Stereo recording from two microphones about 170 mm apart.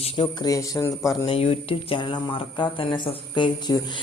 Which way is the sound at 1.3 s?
35° left (ahead or behind).